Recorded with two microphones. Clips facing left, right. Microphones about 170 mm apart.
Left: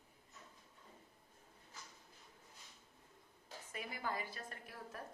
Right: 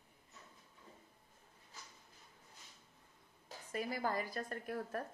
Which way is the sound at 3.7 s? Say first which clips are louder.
Right 6 dB; 40° right (ahead or behind).